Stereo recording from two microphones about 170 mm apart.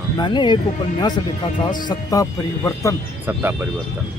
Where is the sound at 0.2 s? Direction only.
25° left (ahead or behind).